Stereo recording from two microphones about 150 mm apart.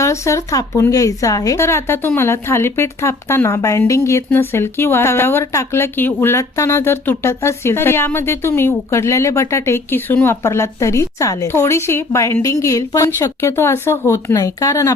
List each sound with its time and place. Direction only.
0.0 s speech: 20° left (ahead or behind)